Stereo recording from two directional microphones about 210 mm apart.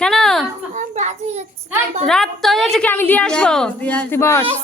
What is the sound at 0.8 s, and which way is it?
Speech, 35° right (ahead or behind).